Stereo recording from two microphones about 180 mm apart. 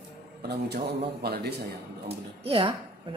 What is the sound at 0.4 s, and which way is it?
A man's voice, 65° right (ahead or behind).